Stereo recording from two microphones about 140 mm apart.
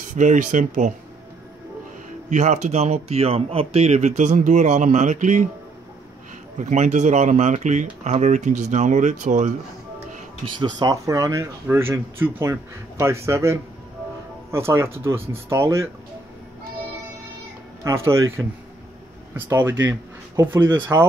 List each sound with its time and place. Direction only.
0.0 s speech: 65° right (ahead or behind)
2.2 s speech: 55° right (ahead or behind)
6.6 s speech: 60° right (ahead or behind)
10.4 s speech: 35° right (ahead or behind)
17.8 s speech: 20° right (ahead or behind)
19.3 s speech: 15° right (ahead or behind)